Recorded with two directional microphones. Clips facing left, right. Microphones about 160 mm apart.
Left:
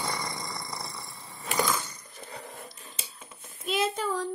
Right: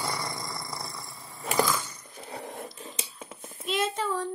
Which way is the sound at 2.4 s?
65° right (ahead or behind).